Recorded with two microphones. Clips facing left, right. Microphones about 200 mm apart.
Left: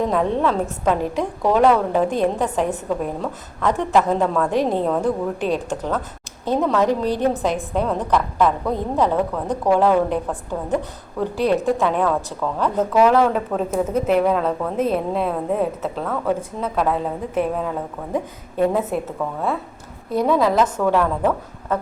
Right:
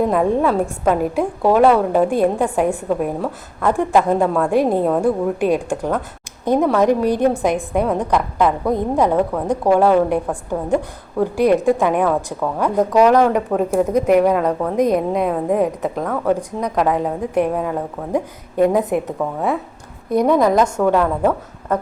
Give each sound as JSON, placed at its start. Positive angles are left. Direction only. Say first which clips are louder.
{"t": 0.0, "sound": "a woman's voice", "louder": "right 3 dB", "side_deg": -10}